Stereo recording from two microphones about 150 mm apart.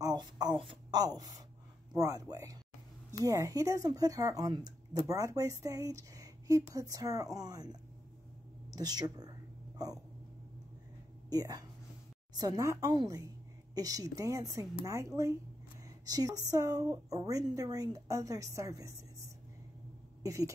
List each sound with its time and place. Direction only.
0.0 s a sound: 25° right (ahead or behind)
1.0 s speech: 25° right (ahead or behind)
8.7 s speech: 25° right (ahead or behind)
11.2 s speech: 25° right (ahead or behind)